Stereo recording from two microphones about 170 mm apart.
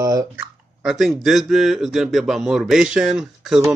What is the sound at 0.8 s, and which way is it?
Speech, centre (ahead or behind).